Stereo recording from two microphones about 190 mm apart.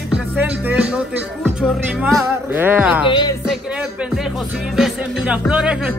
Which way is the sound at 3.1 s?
25° left (ahead or behind).